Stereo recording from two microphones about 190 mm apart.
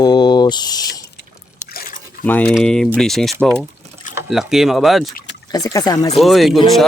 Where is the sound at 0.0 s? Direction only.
20° left (ahead or behind).